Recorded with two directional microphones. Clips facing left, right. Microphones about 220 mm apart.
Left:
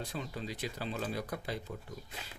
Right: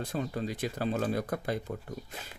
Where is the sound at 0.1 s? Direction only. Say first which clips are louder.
Right 7 dB; 50° right (ahead or behind).